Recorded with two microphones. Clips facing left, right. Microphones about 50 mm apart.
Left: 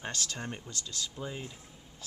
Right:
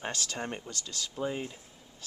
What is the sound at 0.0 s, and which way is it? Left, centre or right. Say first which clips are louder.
Speech: right 2 dB; centre.